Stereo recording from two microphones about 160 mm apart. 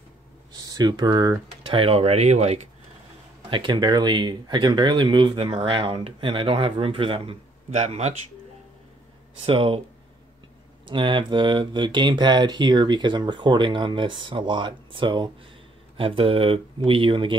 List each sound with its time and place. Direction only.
0.7 s speech: 25° right (ahead or behind); by 2.6 s 45° right (ahead or behind)
3.4 s speech: 30° right (ahead or behind)
9.5 s speech: 35° right (ahead or behind)
10.9 s speech: 30° right (ahead or behind)